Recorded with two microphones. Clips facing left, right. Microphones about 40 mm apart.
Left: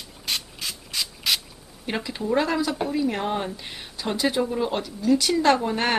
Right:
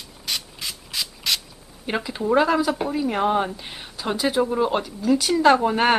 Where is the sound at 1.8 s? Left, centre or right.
Centre.